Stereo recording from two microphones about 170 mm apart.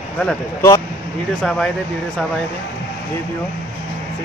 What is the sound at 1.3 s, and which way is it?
Speech, 5° left (ahead or behind).